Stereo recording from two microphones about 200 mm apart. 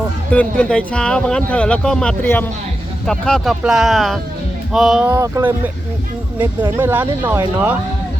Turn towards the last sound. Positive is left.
turn(degrees=-10)  # may be behind; listen again after turning